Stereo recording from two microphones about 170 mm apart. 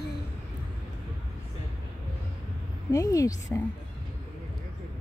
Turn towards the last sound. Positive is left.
turn(degrees=20)  # may be behind; listen again after turning